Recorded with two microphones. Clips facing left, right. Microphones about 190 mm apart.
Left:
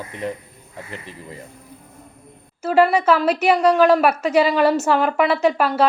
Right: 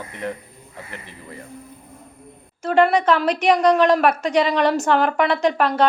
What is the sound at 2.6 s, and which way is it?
A woman's voice, 5° left (ahead or behind).